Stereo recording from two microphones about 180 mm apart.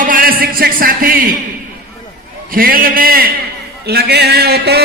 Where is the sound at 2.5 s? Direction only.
50° right (ahead or behind).